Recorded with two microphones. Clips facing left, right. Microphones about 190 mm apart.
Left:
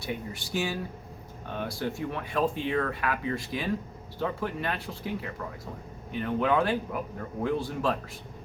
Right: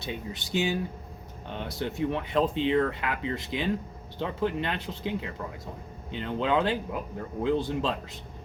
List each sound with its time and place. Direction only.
0.0 s speech: 20° right (ahead or behind)